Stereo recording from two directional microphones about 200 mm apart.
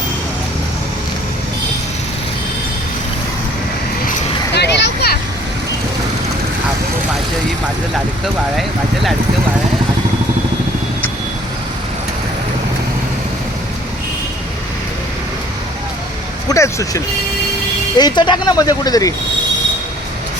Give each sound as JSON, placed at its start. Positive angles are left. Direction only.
{"t": 4.5, "sound": "vehicle", "side_deg": 55}
{"t": 16.5, "sound": "vehicle", "side_deg": 15}
{"t": 17.9, "sound": "speech", "side_deg": 20}